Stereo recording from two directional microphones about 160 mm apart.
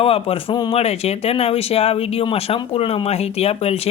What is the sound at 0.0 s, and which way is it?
Speech, 35° left (ahead or behind).